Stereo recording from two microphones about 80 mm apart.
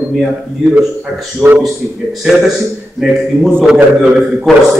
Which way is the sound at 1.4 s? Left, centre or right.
Centre.